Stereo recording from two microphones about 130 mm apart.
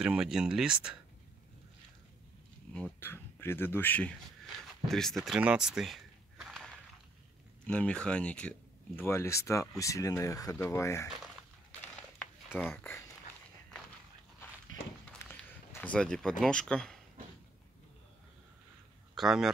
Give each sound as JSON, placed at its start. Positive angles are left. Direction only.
{"t": 0.0, "sound": "speech", "side_deg": -5}
{"t": 2.7, "sound": "speech", "side_deg": 15}
{"t": 4.8, "sound": "speech", "side_deg": 5}
{"t": 7.6, "sound": "speech", "side_deg": 10}
{"t": 11.8, "sound": "crumpling", "side_deg": 15}
{"t": 15.2, "sound": "speech", "side_deg": 15}
{"t": 19.1, "sound": "speech", "side_deg": -5}